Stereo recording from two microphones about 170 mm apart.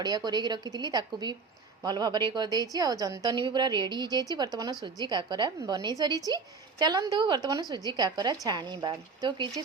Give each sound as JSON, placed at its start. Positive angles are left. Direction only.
{"t": 0.3, "sound": "a woman's voice", "side_deg": -25}